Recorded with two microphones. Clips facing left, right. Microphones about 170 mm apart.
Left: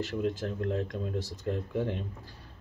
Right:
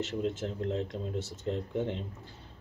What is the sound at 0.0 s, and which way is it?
Speech, 25° right (ahead or behind).